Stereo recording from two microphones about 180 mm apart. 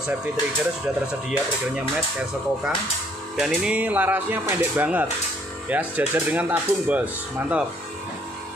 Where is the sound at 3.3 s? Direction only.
5° right (ahead or behind).